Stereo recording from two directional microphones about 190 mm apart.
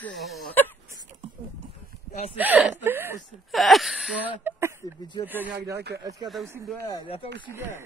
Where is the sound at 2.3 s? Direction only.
10° right (ahead or behind).